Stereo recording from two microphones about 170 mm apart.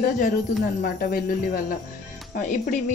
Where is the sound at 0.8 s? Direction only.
60° left (ahead or behind).